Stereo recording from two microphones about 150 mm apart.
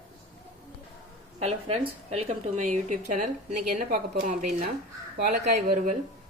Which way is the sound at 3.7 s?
75° right (ahead or behind).